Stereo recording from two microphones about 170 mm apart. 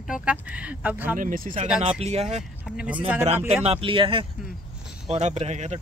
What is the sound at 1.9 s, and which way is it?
Speech, 40° right (ahead or behind).